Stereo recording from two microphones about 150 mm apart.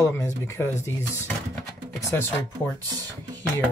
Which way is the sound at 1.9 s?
15° left (ahead or behind).